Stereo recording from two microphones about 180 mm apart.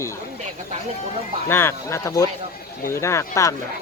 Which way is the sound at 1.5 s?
15° left (ahead or behind).